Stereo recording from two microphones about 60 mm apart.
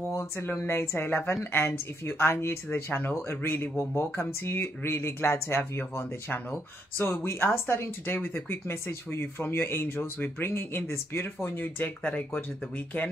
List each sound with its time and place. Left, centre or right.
0.1 s a woman's voice: left